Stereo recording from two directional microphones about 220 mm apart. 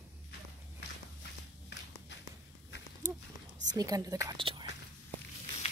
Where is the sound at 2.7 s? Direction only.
50° left (ahead or behind).